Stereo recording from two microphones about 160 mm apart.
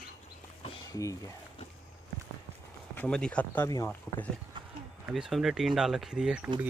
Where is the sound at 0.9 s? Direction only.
20° left (ahead or behind).